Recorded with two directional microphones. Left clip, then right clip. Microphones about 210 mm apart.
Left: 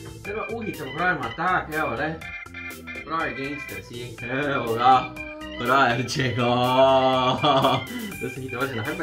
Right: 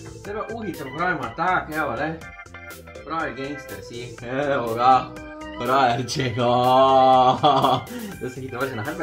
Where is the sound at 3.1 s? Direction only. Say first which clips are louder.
Even; centre (ahead or behind).